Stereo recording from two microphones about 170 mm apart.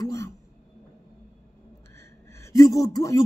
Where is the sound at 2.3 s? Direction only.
15° left (ahead or behind).